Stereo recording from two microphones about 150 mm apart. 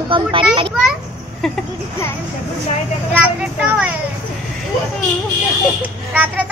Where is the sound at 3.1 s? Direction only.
10° right (ahead or behind).